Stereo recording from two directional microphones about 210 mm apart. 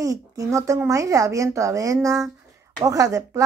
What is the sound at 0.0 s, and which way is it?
Speech, 15° right (ahead or behind).